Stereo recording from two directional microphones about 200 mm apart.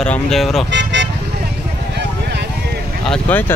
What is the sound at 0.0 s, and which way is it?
Speech, 5° left (ahead or behind).